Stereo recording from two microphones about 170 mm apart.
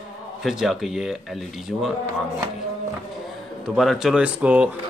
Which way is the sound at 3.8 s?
Centre (ahead or behind).